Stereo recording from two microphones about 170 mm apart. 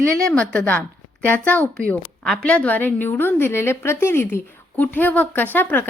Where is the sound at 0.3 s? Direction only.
5° left (ahead or behind).